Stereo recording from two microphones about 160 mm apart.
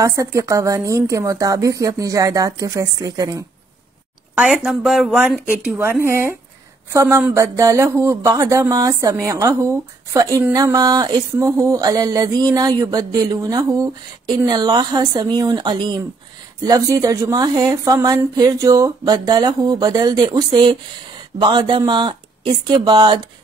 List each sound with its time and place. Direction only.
0.0 s speech: 20° right (ahead or behind)
4.4 s speech: centre (ahead or behind); by 23.2 s 30° right (ahead or behind)